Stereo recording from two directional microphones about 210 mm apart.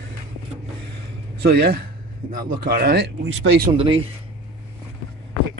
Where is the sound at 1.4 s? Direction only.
50° right (ahead or behind).